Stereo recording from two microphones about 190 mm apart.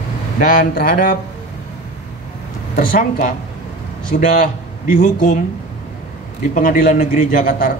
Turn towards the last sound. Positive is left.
turn(degrees=45)  # may be behind; listen again after turning